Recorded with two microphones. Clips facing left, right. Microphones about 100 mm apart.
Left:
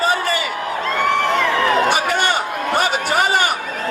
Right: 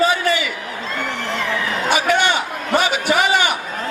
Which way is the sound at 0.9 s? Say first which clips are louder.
Left 7 dB; 60° left (ahead or behind).